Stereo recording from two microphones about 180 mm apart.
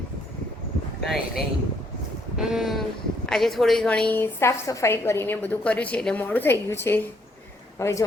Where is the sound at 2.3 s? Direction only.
Centre (ahead or behind).